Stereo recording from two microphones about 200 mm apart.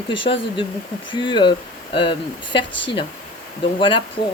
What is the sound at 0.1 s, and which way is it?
Speech, 25° left (ahead or behind).